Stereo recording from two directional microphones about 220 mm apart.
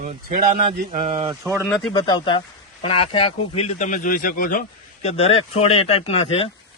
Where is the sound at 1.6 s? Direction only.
Centre (ahead or behind).